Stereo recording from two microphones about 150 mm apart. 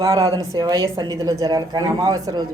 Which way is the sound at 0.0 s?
25° right (ahead or behind).